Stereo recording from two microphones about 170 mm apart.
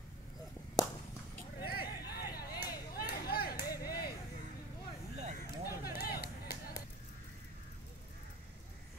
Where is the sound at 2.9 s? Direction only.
65° left (ahead or behind).